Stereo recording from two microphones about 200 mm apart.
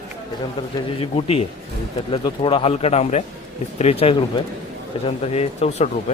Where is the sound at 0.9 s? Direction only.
30° left (ahead or behind).